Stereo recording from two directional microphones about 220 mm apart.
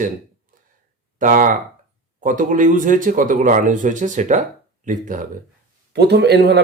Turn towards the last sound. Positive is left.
turn(degrees=-50)  # may be behind; listen again after turning